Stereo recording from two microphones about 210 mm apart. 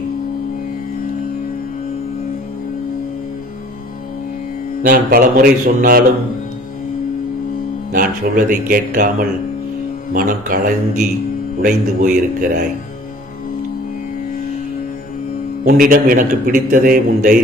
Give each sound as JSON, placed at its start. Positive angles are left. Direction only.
{"t": 4.8, "sound": "speech", "side_deg": -45}
{"t": 7.9, "sound": "speech", "side_deg": -40}
{"t": 10.1, "sound": "a man's voice", "side_deg": -40}
{"t": 15.6, "sound": "a man's voice", "side_deg": -40}